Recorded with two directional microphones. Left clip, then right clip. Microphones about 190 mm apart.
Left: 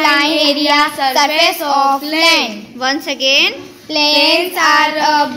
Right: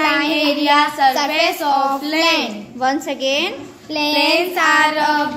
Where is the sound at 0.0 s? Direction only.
35° left (ahead or behind).